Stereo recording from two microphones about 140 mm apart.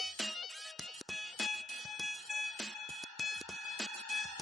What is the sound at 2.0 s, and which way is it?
Music, centre (ahead or behind).